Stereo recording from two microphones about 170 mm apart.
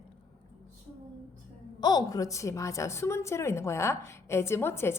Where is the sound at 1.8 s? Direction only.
25° left (ahead or behind).